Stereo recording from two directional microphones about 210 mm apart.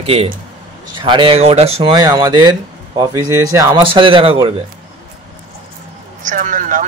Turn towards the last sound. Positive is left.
turn(degrees=-40)  # may be behind; listen again after turning